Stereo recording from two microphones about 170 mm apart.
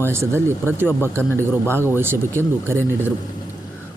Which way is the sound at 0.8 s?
10° left (ahead or behind).